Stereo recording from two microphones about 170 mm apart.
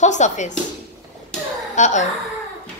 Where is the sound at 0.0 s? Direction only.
45° left (ahead or behind).